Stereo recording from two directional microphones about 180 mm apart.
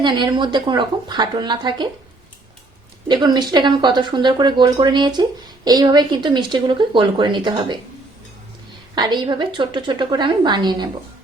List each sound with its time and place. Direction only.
0.0 s speech: 25° right (ahead or behind)
3.1 s speech: 25° right (ahead or behind)
9.0 s speech: 25° right (ahead or behind)